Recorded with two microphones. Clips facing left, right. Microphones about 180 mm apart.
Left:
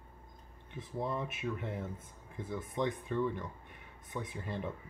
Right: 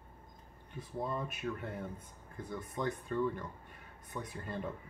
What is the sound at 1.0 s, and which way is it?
Speech, 20° left (ahead or behind).